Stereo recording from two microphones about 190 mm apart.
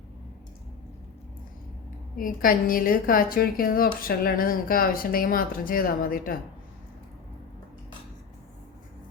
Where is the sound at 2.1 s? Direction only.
50° left (ahead or behind).